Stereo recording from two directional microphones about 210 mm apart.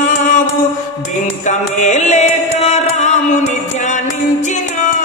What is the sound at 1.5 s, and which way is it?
Speech, 35° left (ahead or behind).